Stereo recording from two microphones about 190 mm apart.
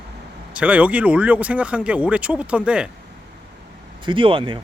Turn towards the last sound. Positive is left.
turn(degrees=-25)  # may be behind; listen again after turning